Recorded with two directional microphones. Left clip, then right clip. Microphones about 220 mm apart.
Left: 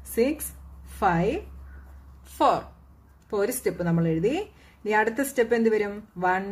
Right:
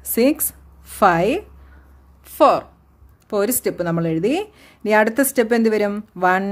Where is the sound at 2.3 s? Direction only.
35° right (ahead or behind).